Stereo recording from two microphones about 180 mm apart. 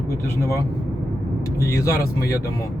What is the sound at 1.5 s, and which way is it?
Speech, 15° left (ahead or behind).